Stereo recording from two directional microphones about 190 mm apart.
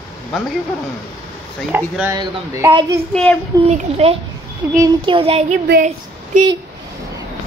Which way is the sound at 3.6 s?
35° right (ahead or behind).